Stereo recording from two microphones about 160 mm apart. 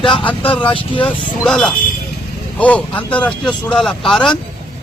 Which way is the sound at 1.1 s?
5° left (ahead or behind).